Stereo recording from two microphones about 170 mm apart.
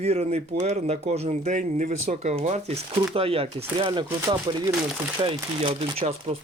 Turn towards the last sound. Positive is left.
turn(degrees=-35)  # may be behind; listen again after turning